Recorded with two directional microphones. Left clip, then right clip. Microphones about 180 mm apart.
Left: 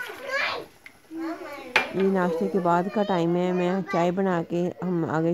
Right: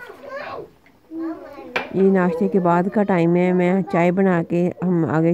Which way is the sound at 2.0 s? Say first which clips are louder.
Right 6 dB; 15° right (ahead or behind).